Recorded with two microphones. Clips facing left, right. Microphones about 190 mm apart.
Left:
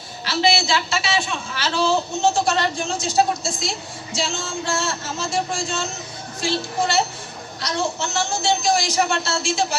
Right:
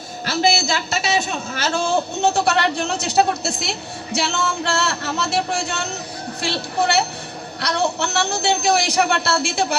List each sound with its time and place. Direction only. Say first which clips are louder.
0.3 s a man's voice: right 1 dB; 45° right (ahead or behind); by 9.7 s 60° right (ahead or behind)